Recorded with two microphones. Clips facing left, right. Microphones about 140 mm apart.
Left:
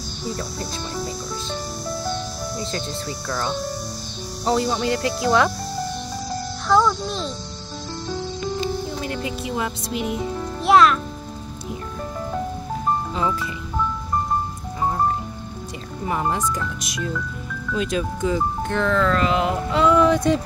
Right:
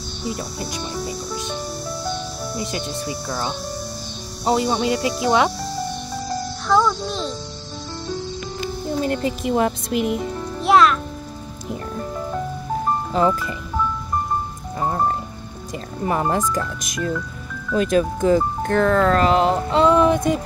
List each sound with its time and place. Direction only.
0.4 s speech: 15° right (ahead or behind)
2.5 s speech: 15° right (ahead or behind)
6.7 s a child's voice: centre (ahead or behind)
9.1 s speech: 50° right (ahead or behind)
10.6 s a child's voice: centre (ahead or behind)
16.1 s speech: 50° right (ahead or behind); by 20.3 s 20° right (ahead or behind)